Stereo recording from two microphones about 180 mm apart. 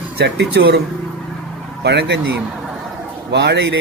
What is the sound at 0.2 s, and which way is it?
Speech, 70° right (ahead or behind).